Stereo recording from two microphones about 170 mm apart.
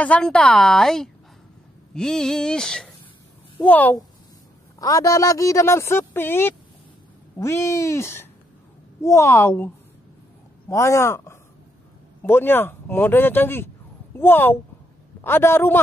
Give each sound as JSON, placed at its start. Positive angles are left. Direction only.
{"t": 0.0, "sound": "a woman's voice", "side_deg": 5}
{"t": 4.7, "sound": "speech", "side_deg": 20}
{"t": 10.7, "sound": "speech", "side_deg": 15}